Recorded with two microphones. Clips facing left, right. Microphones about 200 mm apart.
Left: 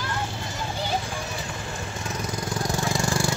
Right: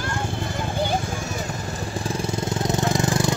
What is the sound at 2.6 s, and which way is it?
Vehicle, 20° right (ahead or behind).